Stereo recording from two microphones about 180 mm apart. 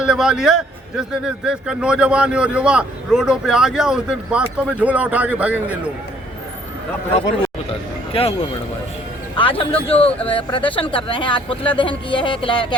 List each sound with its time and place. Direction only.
0.0 s a man's voice: 5° right (ahead or behind)
7.7 s speech: 35° left (ahead or behind)